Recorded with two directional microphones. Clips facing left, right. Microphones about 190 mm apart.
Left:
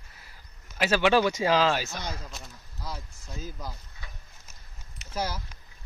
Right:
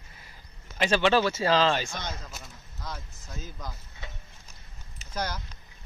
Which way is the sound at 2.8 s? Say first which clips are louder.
Left 1 dB; 10° left (ahead or behind).